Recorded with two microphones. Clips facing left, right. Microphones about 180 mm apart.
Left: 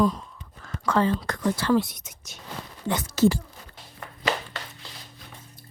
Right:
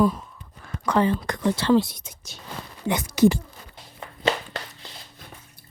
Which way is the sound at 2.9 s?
15° right (ahead or behind).